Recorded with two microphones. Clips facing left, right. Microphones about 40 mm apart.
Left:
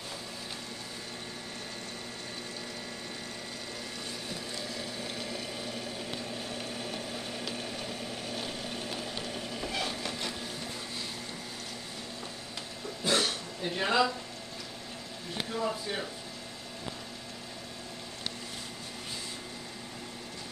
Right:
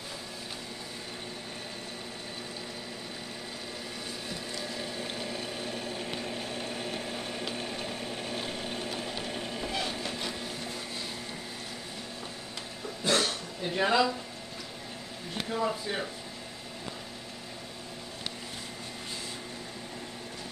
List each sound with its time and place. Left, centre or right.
6.9 s blender: right
9.2 s a sound: right
9.7 s train: centre
13.0 s a sound: centre
13.7 s speech: centre
15.5 s speech: centre